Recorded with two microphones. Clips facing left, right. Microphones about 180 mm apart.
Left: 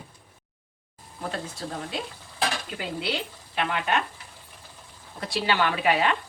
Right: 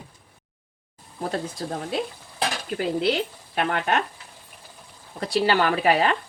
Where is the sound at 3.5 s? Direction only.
45° right (ahead or behind).